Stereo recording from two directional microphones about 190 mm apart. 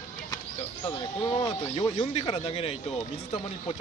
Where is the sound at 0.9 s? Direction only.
20° left (ahead or behind).